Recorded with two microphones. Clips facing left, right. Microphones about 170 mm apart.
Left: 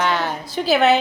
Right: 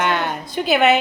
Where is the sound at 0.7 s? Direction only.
Centre (ahead or behind).